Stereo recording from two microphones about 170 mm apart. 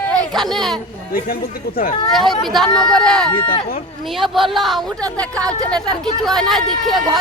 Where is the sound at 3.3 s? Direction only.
30° left (ahead or behind).